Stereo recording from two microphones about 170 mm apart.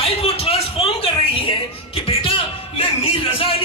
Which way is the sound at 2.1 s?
35° left (ahead or behind).